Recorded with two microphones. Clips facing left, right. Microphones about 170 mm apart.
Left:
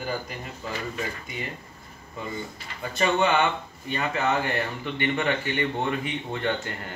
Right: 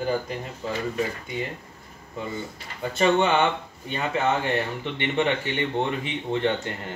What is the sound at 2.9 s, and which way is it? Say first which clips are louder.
Speech: right 2 dB; 25° right (ahead or behind).